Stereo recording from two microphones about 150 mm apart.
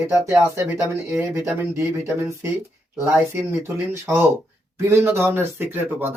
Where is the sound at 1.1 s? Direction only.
15° right (ahead or behind).